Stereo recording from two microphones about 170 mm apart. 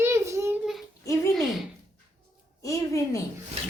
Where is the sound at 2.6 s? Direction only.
20° left (ahead or behind).